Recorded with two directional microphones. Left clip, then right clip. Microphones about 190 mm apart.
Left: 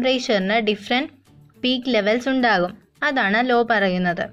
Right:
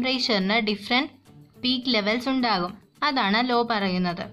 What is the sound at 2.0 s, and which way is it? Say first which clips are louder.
Speech: left 5 dB; 10° left (ahead or behind).